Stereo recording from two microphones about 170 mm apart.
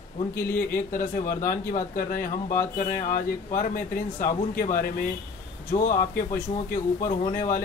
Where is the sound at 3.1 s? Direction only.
50° left (ahead or behind).